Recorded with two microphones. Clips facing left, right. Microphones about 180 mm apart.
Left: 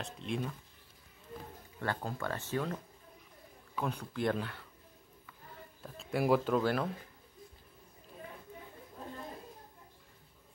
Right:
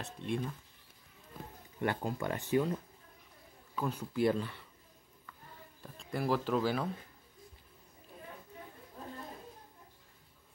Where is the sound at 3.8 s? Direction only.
5° right (ahead or behind).